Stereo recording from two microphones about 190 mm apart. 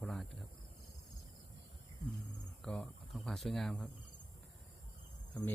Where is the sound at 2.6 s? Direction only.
5° left (ahead or behind).